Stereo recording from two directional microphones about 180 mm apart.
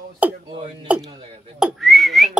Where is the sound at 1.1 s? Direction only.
30° right (ahead or behind).